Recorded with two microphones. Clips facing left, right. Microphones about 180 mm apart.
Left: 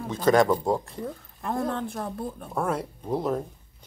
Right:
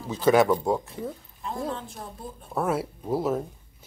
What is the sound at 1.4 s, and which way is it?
Speech, 60° left (ahead or behind).